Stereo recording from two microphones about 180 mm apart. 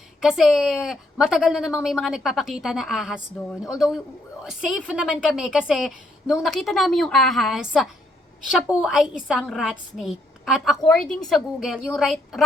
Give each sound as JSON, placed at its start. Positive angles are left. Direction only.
{"t": 0.2, "sound": "a woman's voice", "side_deg": 0}